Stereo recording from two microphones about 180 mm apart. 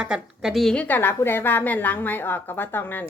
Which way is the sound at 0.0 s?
5° right (ahead or behind).